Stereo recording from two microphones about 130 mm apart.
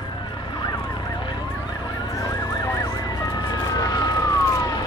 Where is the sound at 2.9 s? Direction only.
30° left (ahead or behind).